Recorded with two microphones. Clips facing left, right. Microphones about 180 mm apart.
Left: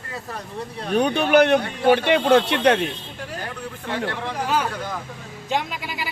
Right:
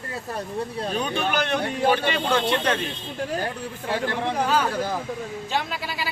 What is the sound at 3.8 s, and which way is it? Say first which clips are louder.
Speech: right 2 dB; 25° right (ahead or behind).